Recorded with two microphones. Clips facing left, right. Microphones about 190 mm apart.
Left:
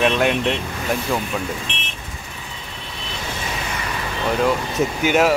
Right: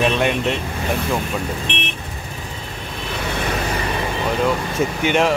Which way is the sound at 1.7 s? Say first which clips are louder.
Right 7 dB; 65° right (ahead or behind).